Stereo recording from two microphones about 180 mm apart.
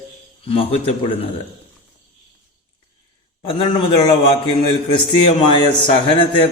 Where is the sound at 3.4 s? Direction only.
30° left (ahead or behind).